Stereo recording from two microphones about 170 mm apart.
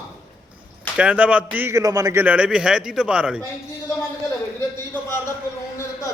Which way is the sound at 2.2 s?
5° right (ahead or behind).